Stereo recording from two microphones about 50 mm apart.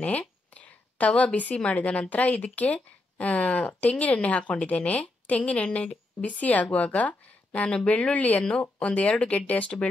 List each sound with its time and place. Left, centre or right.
0.6 s a woman's voice: left